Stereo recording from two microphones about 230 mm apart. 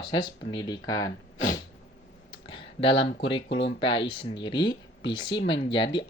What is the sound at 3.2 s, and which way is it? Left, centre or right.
Speech, left.